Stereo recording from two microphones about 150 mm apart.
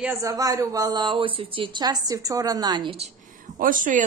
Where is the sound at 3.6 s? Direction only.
65° right (ahead or behind).